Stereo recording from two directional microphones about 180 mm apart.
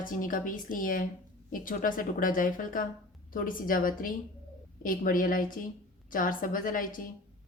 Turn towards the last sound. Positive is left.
turn(degrees=50)  # may be behind; listen again after turning